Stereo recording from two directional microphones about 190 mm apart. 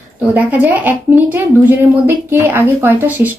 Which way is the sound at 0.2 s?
10° right (ahead or behind).